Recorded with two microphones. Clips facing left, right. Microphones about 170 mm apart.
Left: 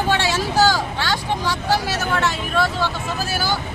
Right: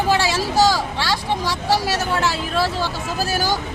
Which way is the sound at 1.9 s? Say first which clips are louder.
Right 1 dB; 35° right (ahead or behind).